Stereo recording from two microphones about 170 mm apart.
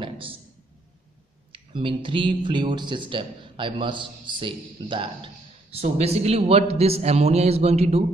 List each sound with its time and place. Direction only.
0.0 s a man's voice: 30° right (ahead or behind)
1.5 s speech: 30° right (ahead or behind)